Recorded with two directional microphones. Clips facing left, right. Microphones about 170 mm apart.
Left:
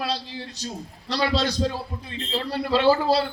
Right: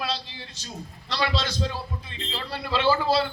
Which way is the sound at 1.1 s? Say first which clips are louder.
Left 4 dB; 40° left (ahead or behind).